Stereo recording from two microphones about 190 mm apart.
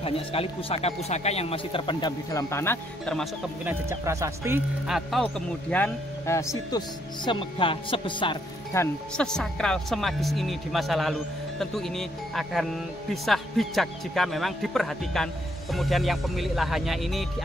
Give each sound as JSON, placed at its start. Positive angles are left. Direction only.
{"t": 0.0, "sound": "speech", "side_deg": 30}
{"t": 3.6, "sound": "speech", "side_deg": -15}
{"t": 4.8, "sound": "speech", "side_deg": 0}
{"t": 7.2, "sound": "speech", "side_deg": 25}
{"t": 8.7, "sound": "speech", "side_deg": 5}